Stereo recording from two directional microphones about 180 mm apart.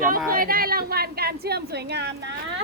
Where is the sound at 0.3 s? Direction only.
55° right (ahead or behind); by 2.3 s 70° right (ahead or behind).